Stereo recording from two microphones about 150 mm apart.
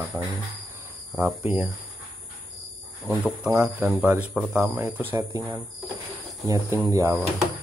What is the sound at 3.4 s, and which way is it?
Speech, 10° right (ahead or behind).